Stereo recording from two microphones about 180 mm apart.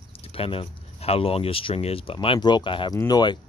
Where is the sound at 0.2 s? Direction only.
30° left (ahead or behind).